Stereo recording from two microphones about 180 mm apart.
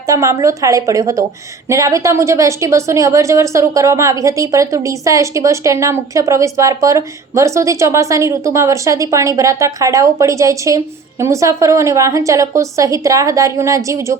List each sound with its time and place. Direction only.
0.0 s a woman's voice: 15° right (ahead or behind)